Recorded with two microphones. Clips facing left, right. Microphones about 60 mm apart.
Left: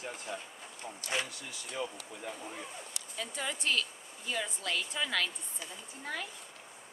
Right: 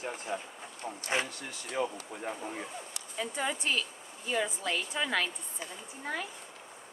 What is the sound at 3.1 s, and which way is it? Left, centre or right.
Speech, centre.